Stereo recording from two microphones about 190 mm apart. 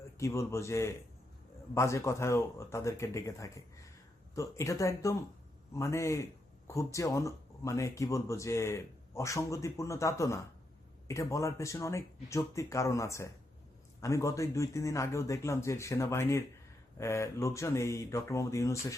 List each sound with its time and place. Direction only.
0.2 s speech: 15° left (ahead or behind)